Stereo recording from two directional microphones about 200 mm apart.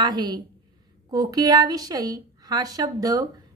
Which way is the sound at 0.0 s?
20° right (ahead or behind).